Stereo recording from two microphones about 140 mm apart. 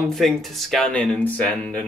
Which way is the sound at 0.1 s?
Centre (ahead or behind).